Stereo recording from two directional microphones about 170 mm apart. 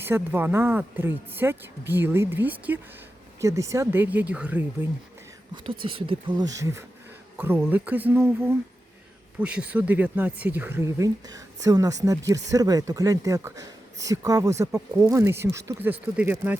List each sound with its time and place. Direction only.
0.0 s speech: 10° right (ahead or behind)
5.8 s speech: 30° right (ahead or behind); by 16.6 s 10° right (ahead or behind)